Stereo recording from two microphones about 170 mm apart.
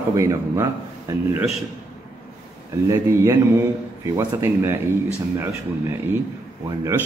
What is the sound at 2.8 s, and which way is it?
A man's voice, 15° right (ahead or behind).